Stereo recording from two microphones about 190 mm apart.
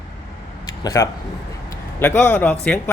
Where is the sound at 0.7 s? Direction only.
20° left (ahead or behind).